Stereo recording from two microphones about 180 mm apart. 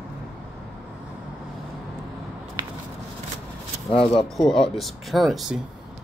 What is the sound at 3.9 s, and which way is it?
Speech, 30° left (ahead or behind).